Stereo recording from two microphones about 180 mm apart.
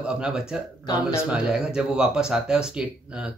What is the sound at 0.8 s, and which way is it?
Speech, 15° left (ahead or behind).